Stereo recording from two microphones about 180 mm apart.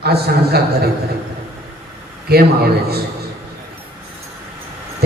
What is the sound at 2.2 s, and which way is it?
Speech, 60° right (ahead or behind).